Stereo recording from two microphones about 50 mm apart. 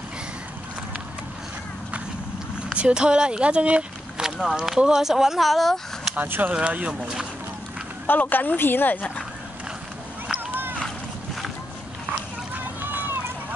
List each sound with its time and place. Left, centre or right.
2.7 s speech: centre
4.2 s a sound: centre
4.6 s speech: centre
6.1 s speech: right
6.5 s speech: right
8.1 s a woman's voice: left
10.5 s a sound: right
12.5 s run: right